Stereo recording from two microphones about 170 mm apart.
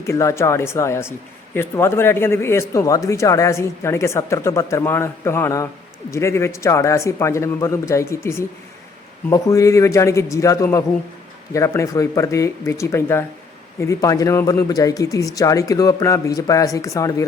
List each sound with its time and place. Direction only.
0.0 s speech: 15° left (ahead or behind)